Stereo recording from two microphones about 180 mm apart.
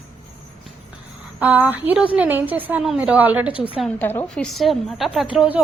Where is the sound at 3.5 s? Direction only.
30° left (ahead or behind).